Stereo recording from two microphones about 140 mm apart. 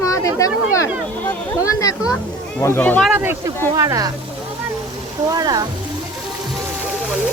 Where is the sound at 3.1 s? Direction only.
15° right (ahead or behind).